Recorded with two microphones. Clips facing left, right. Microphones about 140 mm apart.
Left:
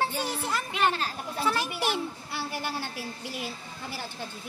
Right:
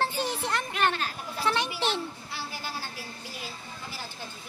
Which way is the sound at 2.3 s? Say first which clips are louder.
Left 6 dB; 65° left (ahead or behind).